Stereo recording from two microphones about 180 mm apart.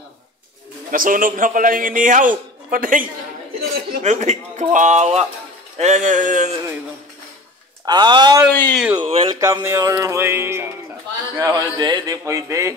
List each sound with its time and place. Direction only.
0.9 s a man's voice: 50° right (ahead or behind)
7.8 s speech: 25° right (ahead or behind)
8.5 s speech: 5° left (ahead or behind)
9.0 s speech: 30° right (ahead or behind)
9.4 s a man's voice: 15° right (ahead or behind)